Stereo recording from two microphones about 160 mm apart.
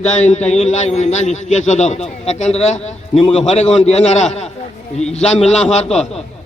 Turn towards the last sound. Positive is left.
turn(degrees=45)  # may be behind; listen again after turning